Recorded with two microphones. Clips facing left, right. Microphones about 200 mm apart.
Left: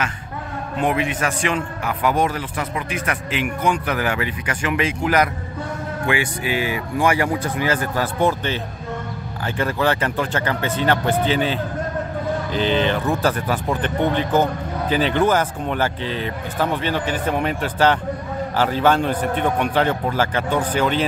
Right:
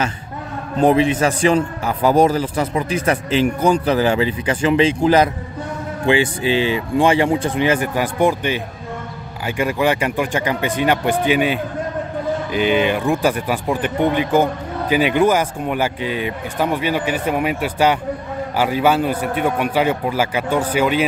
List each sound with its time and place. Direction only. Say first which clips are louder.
0.7 s a man's voice: right 7 dB; 35° right (ahead or behind); by 8.5 s 15° right (ahead or behind)
9.6 s speech: right 3 dB; 10° right (ahead or behind)